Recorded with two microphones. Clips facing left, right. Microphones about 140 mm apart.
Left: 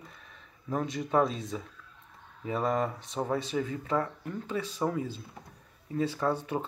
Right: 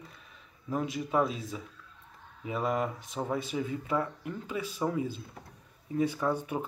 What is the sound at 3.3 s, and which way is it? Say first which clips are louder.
Speech: left 1 dB; 15° right (ahead or behind).